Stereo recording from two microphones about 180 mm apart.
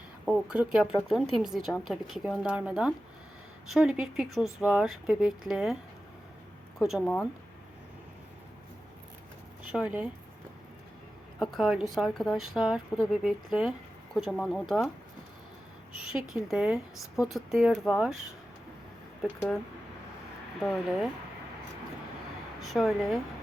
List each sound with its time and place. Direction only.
0.3 s speech: 5° right (ahead or behind)
7.0 s speech: 10° left (ahead or behind)
9.7 s speech: 5° right (ahead or behind)
11.5 s speech: centre (ahead or behind)
16.0 s speech: 5° right (ahead or behind)
19.2 s speech: 5° right (ahead or behind)
20.6 s speech: centre (ahead or behind)
22.6 s speech: centre (ahead or behind)